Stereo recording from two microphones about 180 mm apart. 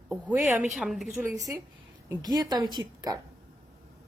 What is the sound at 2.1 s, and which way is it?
A woman's voice, 20° right (ahead or behind).